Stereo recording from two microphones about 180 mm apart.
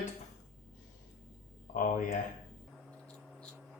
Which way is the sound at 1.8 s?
45° left (ahead or behind).